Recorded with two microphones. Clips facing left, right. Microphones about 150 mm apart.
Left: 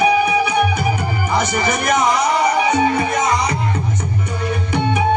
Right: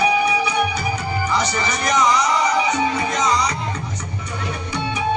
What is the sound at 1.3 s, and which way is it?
Speech, 55° left (ahead or behind).